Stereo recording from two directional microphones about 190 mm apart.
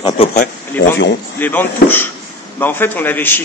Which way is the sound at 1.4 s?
10° left (ahead or behind).